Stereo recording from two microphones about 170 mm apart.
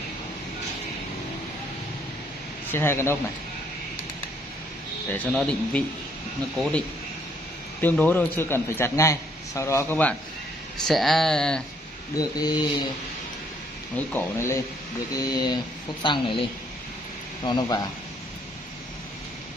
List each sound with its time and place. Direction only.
2.7 s a man's voice: 15° left (ahead or behind)
5.1 s a man's voice: 5° left (ahead or behind)
7.8 s a man's voice: 10° left (ahead or behind)
12.2 s speech: 25° left (ahead or behind)
13.9 s a man's voice: 15° left (ahead or behind)
15.1 s speech: 25° left (ahead or behind)